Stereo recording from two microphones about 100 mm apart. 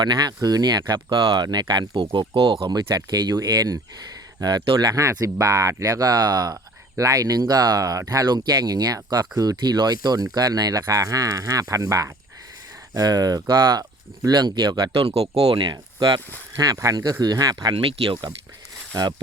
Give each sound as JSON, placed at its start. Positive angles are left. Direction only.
{"t": 0.0, "sound": "speech", "side_deg": -45}
{"t": 2.9, "sound": "speech", "side_deg": -40}
{"t": 15.1, "sound": "speech", "side_deg": -80}
{"t": 17.7, "sound": "speech", "side_deg": -60}